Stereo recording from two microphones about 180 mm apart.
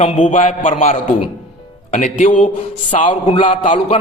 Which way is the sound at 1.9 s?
45° left (ahead or behind).